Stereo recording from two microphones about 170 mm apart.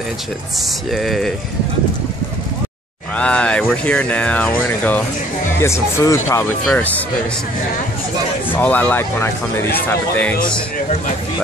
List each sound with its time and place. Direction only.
0.9 s speech: centre (ahead or behind)
3.2 s speech: 5° left (ahead or behind)
6.6 s speech: centre (ahead or behind)
8.5 s speech: 10° left (ahead or behind)